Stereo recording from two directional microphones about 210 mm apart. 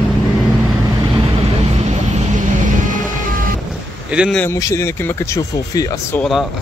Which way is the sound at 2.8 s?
40° right (ahead or behind).